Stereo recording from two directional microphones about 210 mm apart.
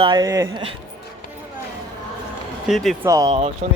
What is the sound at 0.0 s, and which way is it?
Speech, 20° right (ahead or behind).